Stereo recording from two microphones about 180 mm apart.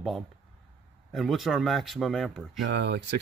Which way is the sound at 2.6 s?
70° right (ahead or behind).